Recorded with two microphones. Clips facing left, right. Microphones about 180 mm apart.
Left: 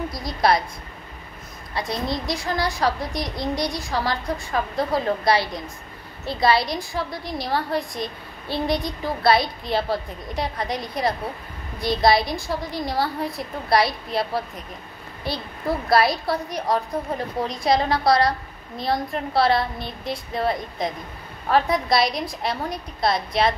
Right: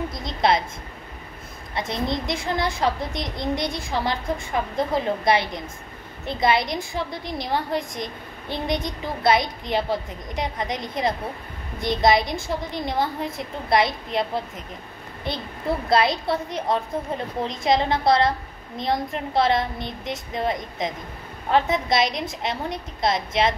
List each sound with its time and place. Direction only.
0.1 s a woman's voice: 25° right (ahead or behind)
1.8 s a woman's voice: 20° right (ahead or behind)